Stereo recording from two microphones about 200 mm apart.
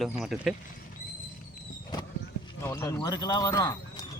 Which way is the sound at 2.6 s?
20° left (ahead or behind).